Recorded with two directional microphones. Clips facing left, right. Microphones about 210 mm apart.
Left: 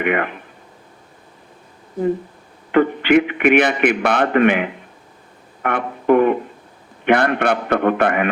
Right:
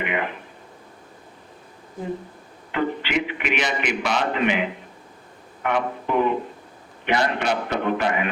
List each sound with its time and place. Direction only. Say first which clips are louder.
0.0 s speech: left 7 dB; 55° left (ahead or behind)
2.7 s a man's voice: left 10 dB; 55° left (ahead or behind)